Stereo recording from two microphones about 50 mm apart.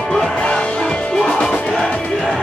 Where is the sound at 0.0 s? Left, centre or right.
Centre.